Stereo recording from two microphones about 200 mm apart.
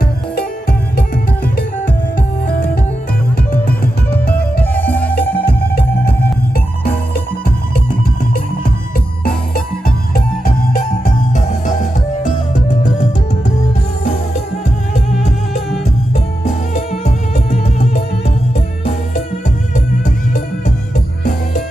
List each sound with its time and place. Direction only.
4.7 s music: 10° left (ahead or behind)
11.0 s music: 40° left (ahead or behind)
16.1 s music: 35° left (ahead or behind)